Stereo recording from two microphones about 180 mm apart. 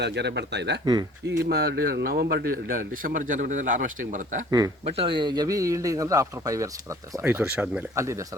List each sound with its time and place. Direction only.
0.0 s a man's voice: 70° right (ahead or behind); by 4.2 s 45° right (ahead or behind)
4.9 s a man's voice: 30° right (ahead or behind)